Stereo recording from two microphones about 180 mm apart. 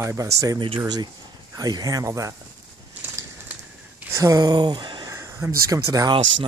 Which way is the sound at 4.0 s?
15° right (ahead or behind).